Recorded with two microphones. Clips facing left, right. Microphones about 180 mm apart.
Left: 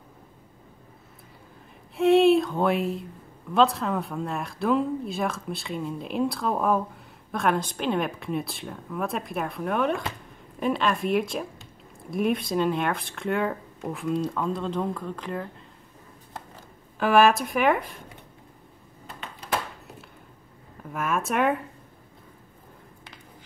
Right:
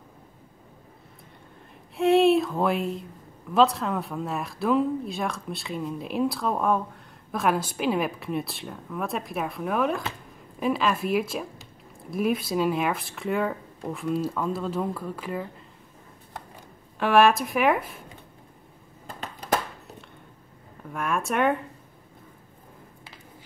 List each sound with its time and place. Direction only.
2.0 s speech: centre (ahead or behind)
17.0 s speech: centre (ahead or behind)
19.1 s a sound: 40° right (ahead or behind)
20.9 s speech: centre (ahead or behind)